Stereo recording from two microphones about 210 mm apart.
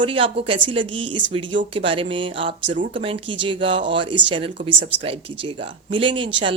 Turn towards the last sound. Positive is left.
turn(degrees=-25)  # may be behind; listen again after turning